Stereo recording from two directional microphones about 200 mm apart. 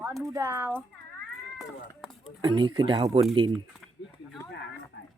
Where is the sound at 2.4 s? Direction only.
25° right (ahead or behind).